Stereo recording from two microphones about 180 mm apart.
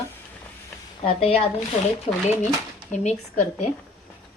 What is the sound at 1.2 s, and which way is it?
A woman's voice, 35° left (ahead or behind).